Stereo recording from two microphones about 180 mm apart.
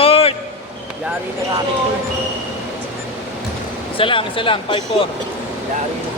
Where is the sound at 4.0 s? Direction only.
30° left (ahead or behind).